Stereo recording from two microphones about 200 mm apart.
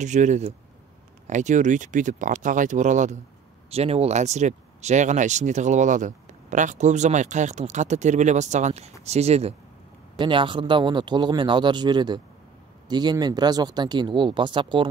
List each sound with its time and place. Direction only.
0.0 s speech: 35° right (ahead or behind)